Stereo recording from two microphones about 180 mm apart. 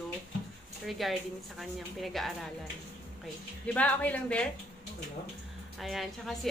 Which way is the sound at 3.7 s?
10° left (ahead or behind).